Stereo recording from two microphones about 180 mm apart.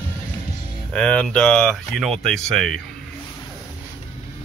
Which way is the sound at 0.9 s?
5° left (ahead or behind).